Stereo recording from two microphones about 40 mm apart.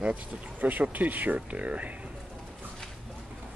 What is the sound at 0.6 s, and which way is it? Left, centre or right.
Speech, right.